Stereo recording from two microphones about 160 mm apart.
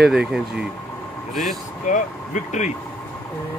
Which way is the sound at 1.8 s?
50° left (ahead or behind).